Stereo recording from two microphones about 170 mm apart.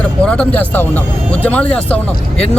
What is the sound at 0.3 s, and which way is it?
A man's voice, 10° left (ahead or behind).